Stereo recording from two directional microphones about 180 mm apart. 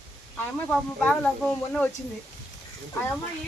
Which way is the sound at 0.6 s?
5° left (ahead or behind).